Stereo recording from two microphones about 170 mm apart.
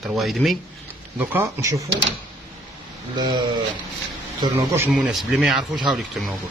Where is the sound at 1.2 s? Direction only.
15° right (ahead or behind).